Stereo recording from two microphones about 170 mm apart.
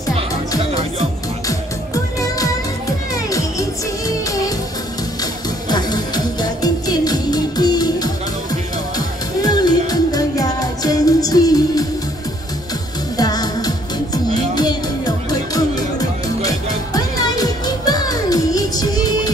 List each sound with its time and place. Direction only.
2.1 s music: 20° left (ahead or behind)
5.7 s music: 25° left (ahead or behind)
13.2 s music: 20° left (ahead or behind)